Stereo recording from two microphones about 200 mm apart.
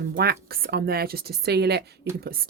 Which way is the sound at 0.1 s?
50° right (ahead or behind).